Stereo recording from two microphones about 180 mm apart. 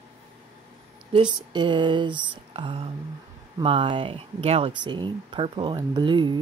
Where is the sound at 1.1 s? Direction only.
25° right (ahead or behind).